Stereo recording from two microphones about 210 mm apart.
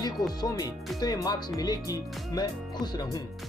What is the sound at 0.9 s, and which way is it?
Speech, 20° left (ahead or behind).